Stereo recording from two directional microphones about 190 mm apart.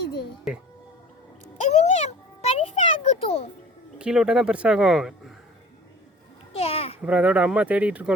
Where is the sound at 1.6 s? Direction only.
35° left (ahead or behind).